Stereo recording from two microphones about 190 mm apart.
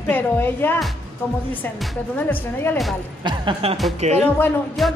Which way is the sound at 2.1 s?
10° left (ahead or behind).